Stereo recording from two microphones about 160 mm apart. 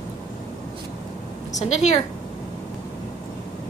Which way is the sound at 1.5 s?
45° left (ahead or behind).